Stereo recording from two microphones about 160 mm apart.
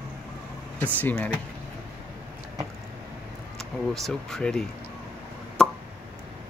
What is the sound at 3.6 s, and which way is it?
Speech, 5° left (ahead or behind).